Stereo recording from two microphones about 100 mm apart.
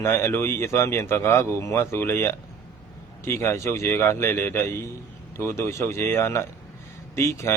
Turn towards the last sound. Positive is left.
turn(degrees=30)  # may be behind; listen again after turning